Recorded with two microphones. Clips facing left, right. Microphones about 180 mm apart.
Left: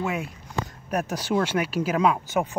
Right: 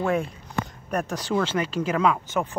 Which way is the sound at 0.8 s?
5° left (ahead or behind).